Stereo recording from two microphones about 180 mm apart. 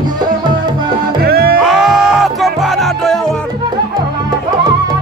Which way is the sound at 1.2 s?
60° right (ahead or behind).